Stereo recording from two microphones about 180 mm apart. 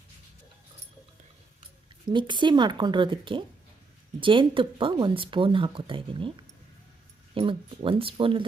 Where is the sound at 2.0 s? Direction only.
25° right (ahead or behind).